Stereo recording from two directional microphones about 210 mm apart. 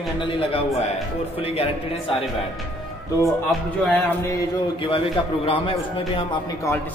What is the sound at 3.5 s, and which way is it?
Speech, centre (ahead or behind).